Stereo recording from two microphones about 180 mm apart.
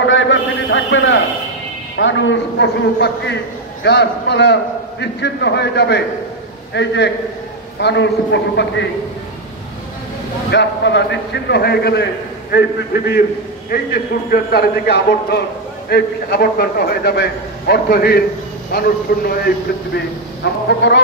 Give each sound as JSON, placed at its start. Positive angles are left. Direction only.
{"t": 0.0, "sound": "a sound", "side_deg": 90}
{"t": 2.0, "sound": "a man's voice", "side_deg": 90}
{"t": 10.5, "sound": "a man's voice", "side_deg": 75}
{"t": 20.8, "sound": "a man's voice", "side_deg": 80}